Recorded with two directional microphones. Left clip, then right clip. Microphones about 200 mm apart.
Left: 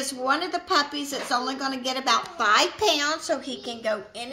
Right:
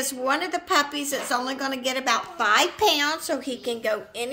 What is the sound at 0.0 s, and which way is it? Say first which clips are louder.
A woman's voice: even; 25° right (ahead or behind).